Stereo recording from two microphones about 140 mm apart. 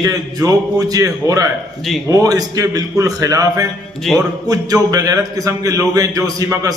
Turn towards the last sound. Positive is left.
turn(degrees=-25)  # may be behind; listen again after turning